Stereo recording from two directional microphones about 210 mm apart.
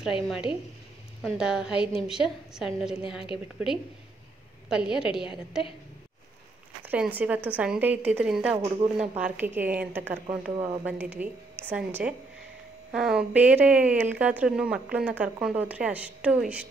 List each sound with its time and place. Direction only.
0.0 s a woman's voice: centre (ahead or behind)
6.8 s a woman's voice: 10° right (ahead or behind)
10.5 s speech: 20° right (ahead or behind)
10.8 s a woman's voice: 5° right (ahead or behind)